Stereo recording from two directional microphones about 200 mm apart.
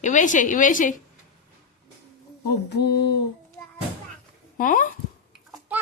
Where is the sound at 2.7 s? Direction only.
55° left (ahead or behind).